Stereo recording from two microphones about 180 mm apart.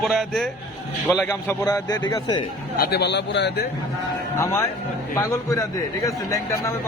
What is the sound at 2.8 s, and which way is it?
Speech, 65° left (ahead or behind).